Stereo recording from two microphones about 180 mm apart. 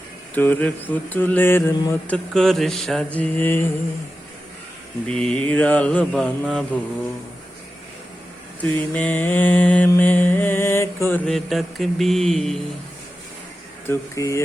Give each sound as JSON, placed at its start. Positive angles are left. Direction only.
{"t": 0.3, "sound": "mantra", "side_deg": 10}
{"t": 5.0, "sound": "mantra", "side_deg": 5}
{"t": 8.6, "sound": "mantra", "side_deg": 10}
{"t": 11.3, "sound": "mantra", "side_deg": 0}
{"t": 13.8, "sound": "mantra", "side_deg": 15}